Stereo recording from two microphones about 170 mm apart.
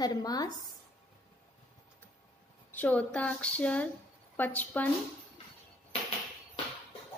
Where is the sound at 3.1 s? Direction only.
10° left (ahead or behind).